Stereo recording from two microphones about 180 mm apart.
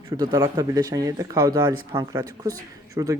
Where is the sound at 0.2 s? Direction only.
25° right (ahead or behind).